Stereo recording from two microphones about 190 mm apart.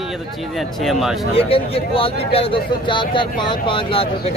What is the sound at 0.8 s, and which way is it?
Speech, centre (ahead or behind).